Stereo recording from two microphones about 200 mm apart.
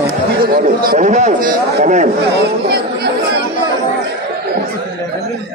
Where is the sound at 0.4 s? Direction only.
45° right (ahead or behind).